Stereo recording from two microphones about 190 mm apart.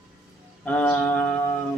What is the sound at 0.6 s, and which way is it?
Speech, 10° left (ahead or behind).